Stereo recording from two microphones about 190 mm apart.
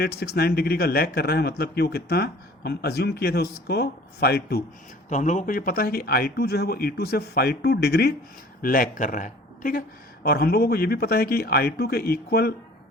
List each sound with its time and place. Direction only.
0.0 s speech: 55° left (ahead or behind)
5.0 s speech: 40° left (ahead or behind); by 8.1 s 55° left (ahead or behind)
8.6 s speech: 45° left (ahead or behind)